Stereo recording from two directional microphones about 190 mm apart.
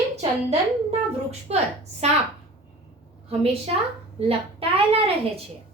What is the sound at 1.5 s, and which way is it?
Speech, 30° right (ahead or behind).